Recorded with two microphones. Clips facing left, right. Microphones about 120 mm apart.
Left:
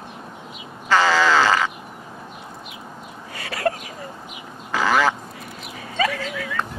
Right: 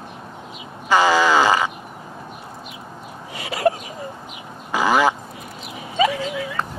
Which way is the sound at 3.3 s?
20° right (ahead or behind).